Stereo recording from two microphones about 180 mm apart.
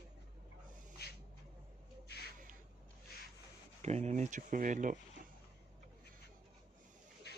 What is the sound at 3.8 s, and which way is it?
Speech, 40° right (ahead or behind).